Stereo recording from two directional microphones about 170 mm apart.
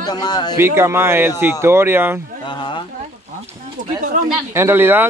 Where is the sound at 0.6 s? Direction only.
15° right (ahead or behind).